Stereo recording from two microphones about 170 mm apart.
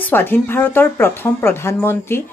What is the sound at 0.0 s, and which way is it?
Speech, 10° left (ahead or behind).